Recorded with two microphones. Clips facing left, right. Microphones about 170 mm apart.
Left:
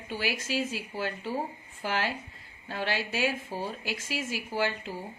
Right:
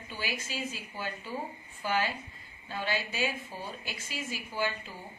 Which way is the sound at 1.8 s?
75° left (ahead or behind).